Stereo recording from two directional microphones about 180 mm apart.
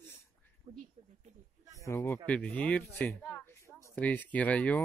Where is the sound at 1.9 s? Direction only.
15° left (ahead or behind).